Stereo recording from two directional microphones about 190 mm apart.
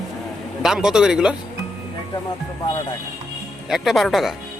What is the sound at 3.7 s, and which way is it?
Speech, centre (ahead or behind).